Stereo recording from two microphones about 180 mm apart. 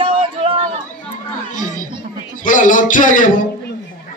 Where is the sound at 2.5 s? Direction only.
45° left (ahead or behind).